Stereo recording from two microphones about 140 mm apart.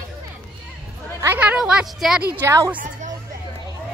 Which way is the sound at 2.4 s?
20° right (ahead or behind).